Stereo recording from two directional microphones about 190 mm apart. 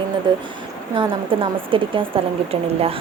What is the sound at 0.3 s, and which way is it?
A woman's voice, 25° right (ahead or behind).